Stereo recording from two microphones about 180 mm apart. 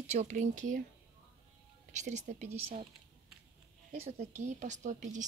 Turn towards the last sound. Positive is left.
turn(degrees=-45)  # may be behind; listen again after turning